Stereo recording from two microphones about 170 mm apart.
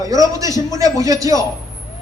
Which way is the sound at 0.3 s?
20° right (ahead or behind).